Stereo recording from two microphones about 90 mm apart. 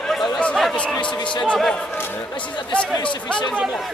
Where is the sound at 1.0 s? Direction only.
65° left (ahead or behind).